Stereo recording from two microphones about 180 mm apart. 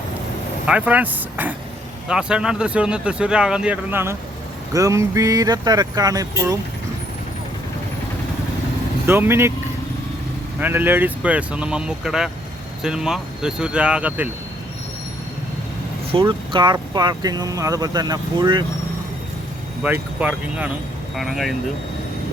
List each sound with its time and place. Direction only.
0.7 s speech: 10° right (ahead or behind)
9.0 s speech: 15° right (ahead or behind)
10.6 s speech: 10° right (ahead or behind)
16.1 s speech: 25° right (ahead or behind)
19.8 s speech: 10° right (ahead or behind)